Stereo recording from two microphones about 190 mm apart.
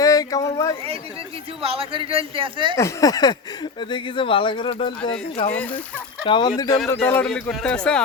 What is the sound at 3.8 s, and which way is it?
Speech, 25° left (ahead or behind).